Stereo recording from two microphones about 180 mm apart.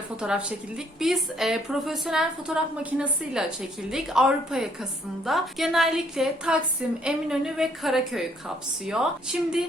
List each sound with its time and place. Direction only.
0.2 s a woman's voice: 5° right (ahead or behind)
3.8 s a woman's voice: 5° right (ahead or behind)